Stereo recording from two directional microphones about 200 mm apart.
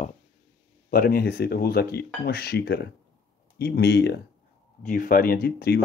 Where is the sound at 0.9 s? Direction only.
50° left (ahead or behind).